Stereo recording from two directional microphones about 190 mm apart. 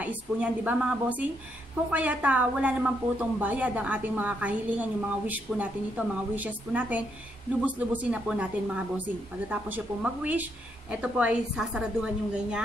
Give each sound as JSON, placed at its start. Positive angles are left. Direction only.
{"t": 0.0, "sound": "speech", "side_deg": -10}